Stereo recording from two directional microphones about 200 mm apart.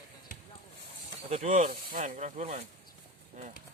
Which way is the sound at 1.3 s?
35° right (ahead or behind).